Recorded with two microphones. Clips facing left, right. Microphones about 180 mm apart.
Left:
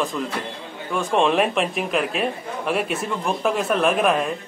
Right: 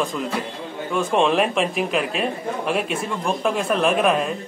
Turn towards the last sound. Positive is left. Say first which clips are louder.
# even
turn(degrees=0)  # may be behind; listen again after turning